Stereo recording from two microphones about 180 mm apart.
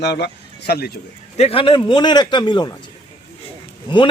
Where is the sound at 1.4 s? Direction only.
30° left (ahead or behind).